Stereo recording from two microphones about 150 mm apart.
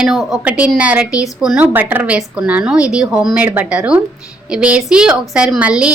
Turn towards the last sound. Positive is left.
turn(degrees=-5)  # may be behind; listen again after turning